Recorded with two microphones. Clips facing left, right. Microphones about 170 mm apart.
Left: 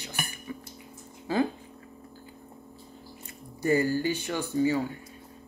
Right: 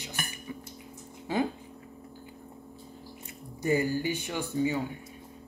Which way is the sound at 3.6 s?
15° right (ahead or behind).